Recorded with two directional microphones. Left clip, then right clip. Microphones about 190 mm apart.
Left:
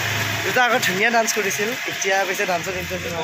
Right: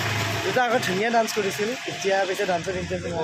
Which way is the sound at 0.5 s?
Centre (ahead or behind).